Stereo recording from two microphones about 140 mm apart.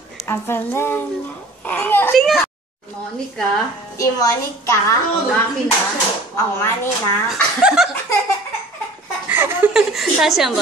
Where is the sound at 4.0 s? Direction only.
25° left (ahead or behind).